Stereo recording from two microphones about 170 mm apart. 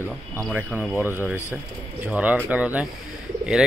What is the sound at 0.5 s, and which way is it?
Speech, 10° right (ahead or behind).